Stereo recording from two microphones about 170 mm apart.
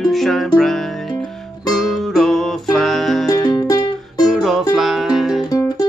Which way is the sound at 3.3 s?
25° left (ahead or behind).